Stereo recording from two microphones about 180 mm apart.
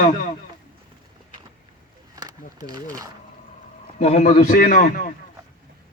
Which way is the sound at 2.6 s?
20° right (ahead or behind).